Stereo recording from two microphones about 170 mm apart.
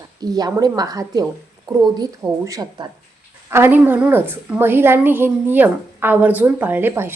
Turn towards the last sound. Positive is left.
turn(degrees=-15)  # may be behind; listen again after turning